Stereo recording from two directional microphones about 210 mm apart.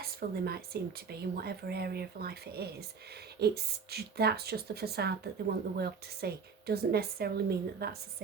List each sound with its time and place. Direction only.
0.0 s speech: 45° right (ahead or behind)